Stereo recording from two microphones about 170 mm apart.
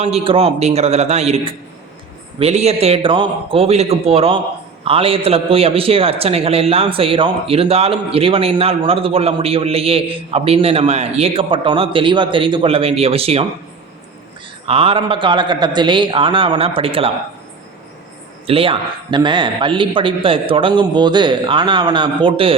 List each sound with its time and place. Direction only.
0.0 s a man's voice: 35° right (ahead or behind)
14.7 s a man's voice: 35° right (ahead or behind)
18.4 s a man's voice: 35° right (ahead or behind)